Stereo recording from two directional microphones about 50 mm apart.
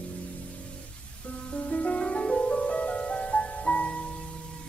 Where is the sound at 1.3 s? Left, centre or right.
Left.